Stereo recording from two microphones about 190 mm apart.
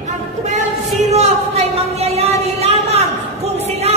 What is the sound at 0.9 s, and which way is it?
Music, 35° right (ahead or behind).